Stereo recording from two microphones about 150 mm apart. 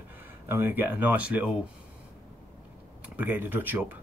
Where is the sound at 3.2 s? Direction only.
15° right (ahead or behind).